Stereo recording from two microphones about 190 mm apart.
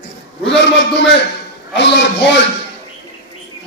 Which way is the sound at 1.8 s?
65° left (ahead or behind).